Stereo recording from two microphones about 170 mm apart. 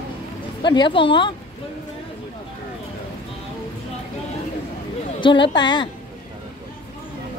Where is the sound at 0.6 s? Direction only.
30° left (ahead or behind).